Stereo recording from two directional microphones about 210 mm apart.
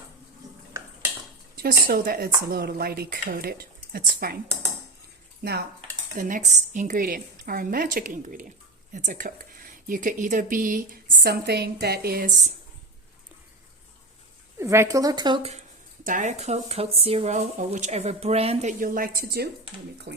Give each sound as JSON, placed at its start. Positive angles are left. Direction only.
{"t": 1.5, "sound": "speech", "side_deg": -45}
{"t": 5.4, "sound": "dishes", "side_deg": -50}
{"t": 6.1, "sound": "a woman's voice", "side_deg": -40}
{"t": 14.6, "sound": "speech", "side_deg": -15}
{"t": 16.0, "sound": "a woman's voice", "side_deg": -35}
{"t": 18.8, "sound": "speech", "side_deg": -45}
{"t": 20.1, "sound": "speech", "side_deg": -60}